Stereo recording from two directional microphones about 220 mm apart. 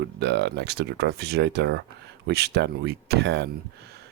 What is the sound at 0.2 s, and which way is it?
Speech, 50° right (ahead or behind).